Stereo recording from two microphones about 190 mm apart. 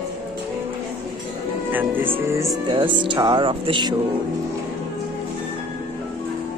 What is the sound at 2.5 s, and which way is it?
Speech, 25° right (ahead or behind).